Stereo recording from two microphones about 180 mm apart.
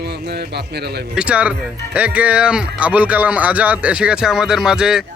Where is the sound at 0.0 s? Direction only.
65° right (ahead or behind).